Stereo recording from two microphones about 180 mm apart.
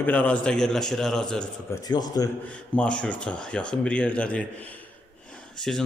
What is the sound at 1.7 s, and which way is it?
Speech, 20° left (ahead or behind).